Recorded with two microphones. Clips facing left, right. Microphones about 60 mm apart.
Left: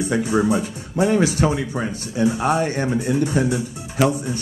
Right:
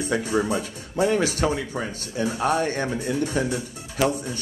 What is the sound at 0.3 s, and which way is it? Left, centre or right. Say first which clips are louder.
Speech: left 5 dB; left.